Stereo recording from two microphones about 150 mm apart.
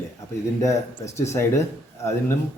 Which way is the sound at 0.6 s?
20° left (ahead or behind).